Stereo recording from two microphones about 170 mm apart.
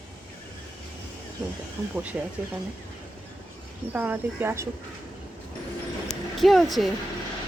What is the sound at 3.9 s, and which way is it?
Speech, 10° right (ahead or behind).